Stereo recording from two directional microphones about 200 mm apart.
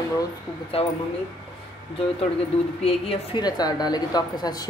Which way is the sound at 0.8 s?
30° left (ahead or behind).